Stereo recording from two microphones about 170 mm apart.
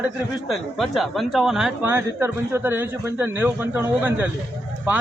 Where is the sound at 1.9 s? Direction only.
15° right (ahead or behind).